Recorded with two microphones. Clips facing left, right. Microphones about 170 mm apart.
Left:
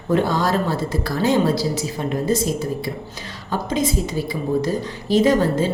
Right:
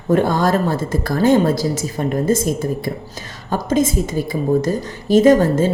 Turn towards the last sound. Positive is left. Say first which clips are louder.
# right 5 dB
turn(degrees=-45)  # may be behind; listen again after turning